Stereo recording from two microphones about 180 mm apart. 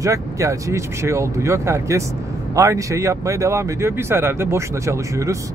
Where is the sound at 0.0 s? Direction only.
15° right (ahead or behind).